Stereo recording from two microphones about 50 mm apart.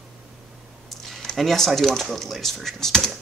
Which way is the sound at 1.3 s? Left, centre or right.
Centre.